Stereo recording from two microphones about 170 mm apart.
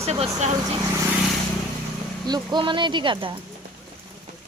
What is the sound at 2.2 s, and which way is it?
Speech, 25° right (ahead or behind).